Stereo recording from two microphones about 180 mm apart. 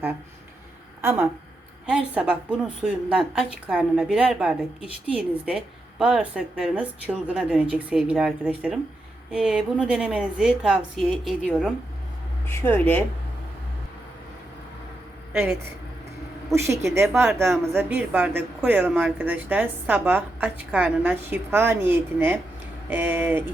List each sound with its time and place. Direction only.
1.0 s a woman's voice: 10° right (ahead or behind); by 13.1 s 10° left (ahead or behind)
15.3 s speech: 10° right (ahead or behind)